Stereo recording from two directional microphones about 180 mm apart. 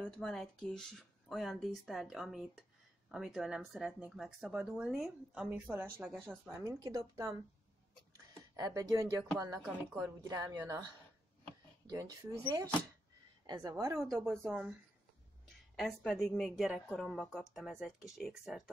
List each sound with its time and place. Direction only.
0.0 s speech: 5° left (ahead or behind); by 7.3 s 20° right (ahead or behind)
8.5 s speech: 20° right (ahead or behind)
12.0 s speech: 20° right (ahead or behind); by 18.6 s centre (ahead or behind)